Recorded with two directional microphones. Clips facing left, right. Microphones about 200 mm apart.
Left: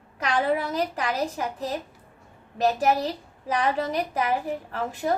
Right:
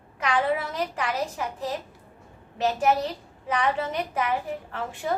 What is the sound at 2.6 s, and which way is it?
A woman's voice, 40° left (ahead or behind).